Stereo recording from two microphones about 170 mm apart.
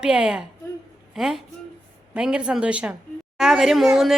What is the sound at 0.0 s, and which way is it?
A woman's voice, 5° right (ahead or behind).